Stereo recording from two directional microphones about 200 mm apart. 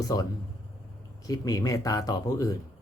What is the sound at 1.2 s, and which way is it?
Speech, 15° left (ahead or behind).